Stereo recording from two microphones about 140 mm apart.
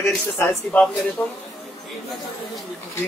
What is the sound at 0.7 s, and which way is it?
Speech, 10° left (ahead or behind).